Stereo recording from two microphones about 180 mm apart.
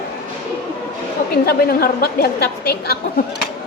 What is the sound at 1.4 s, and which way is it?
A woman's voice, 60° left (ahead or behind).